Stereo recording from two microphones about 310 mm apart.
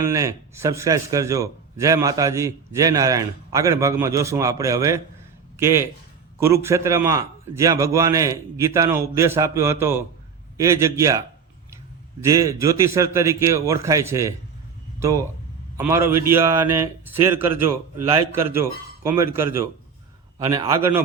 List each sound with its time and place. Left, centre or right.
0.0 s a man's voice: centre
12.2 s a man's voice: centre
15.8 s a man's voice: centre
16.6 s speech: right
17.2 s a man's voice: centre